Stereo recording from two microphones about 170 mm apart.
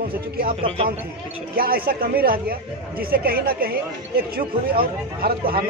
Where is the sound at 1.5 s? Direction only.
60° right (ahead or behind).